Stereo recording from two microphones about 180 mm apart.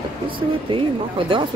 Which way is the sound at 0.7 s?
30° right (ahead or behind).